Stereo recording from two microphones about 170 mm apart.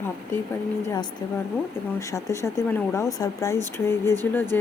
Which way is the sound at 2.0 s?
20° left (ahead or behind).